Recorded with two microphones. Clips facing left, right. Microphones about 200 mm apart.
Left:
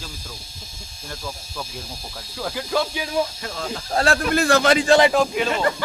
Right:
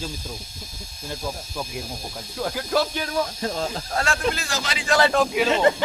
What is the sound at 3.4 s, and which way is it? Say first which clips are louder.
Speech: right 3 dB; 35° right (ahead or behind).